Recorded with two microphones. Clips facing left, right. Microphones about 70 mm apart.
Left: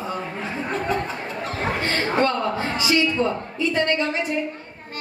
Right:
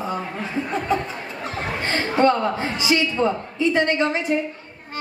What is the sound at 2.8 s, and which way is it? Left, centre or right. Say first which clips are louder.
A woman's voice: even; right.